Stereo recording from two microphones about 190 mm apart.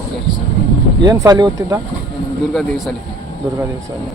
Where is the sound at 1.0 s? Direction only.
20° right (ahead or behind).